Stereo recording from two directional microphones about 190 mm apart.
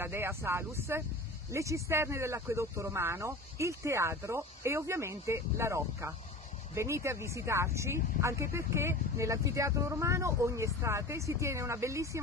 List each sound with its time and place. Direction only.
0.0 s speech: 10° right (ahead or behind)